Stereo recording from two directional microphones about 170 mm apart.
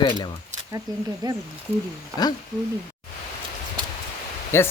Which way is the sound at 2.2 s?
25° left (ahead or behind).